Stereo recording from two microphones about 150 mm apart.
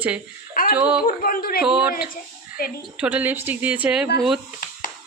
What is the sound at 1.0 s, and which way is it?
Speech, 70° left (ahead or behind).